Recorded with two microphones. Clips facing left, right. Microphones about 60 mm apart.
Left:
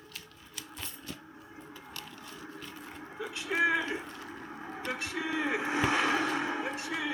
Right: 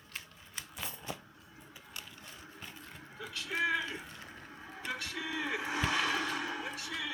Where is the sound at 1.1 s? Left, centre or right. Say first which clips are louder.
Even; centre.